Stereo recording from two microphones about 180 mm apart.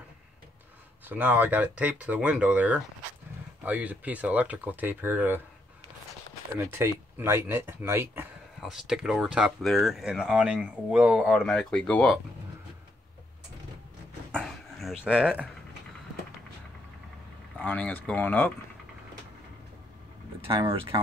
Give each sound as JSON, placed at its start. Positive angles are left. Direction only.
{"t": 1.0, "sound": "speech", "side_deg": -10}
{"t": 6.6, "sound": "speech", "side_deg": -15}
{"t": 8.6, "sound": "speech", "side_deg": -5}
{"t": 14.4, "sound": "dog", "side_deg": 0}
{"t": 17.6, "sound": "speech", "side_deg": 10}
{"t": 20.4, "sound": "speech", "side_deg": -30}